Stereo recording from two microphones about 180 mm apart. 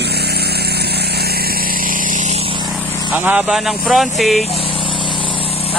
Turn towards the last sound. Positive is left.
turn(degrees=0)  # may be behind; listen again after turning